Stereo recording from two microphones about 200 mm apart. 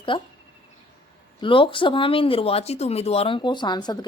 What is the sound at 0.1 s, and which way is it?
Speech, 25° left (ahead or behind).